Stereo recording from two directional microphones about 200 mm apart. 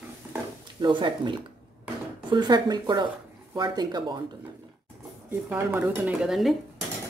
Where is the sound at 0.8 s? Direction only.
25° right (ahead or behind).